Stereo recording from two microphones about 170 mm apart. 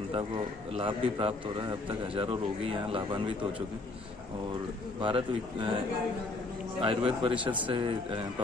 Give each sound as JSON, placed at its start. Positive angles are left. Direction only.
{"t": 0.7, "sound": "speech", "side_deg": -30}
{"t": 5.0, "sound": "a man's voice", "side_deg": -30}
{"t": 6.8, "sound": "a man's voice", "side_deg": -30}